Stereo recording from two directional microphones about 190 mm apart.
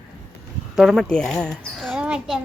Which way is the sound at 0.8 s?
Centre (ahead or behind).